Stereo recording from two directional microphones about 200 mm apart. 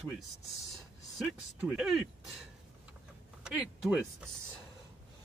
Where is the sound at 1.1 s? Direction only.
5° right (ahead or behind).